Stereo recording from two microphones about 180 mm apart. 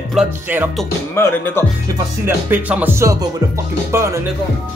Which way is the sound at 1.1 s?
15° left (ahead or behind).